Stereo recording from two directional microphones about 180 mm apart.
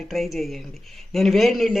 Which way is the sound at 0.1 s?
Centre (ahead or behind).